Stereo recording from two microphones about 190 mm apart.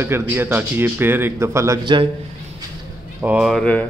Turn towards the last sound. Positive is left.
turn(degrees=5)  # may be behind; listen again after turning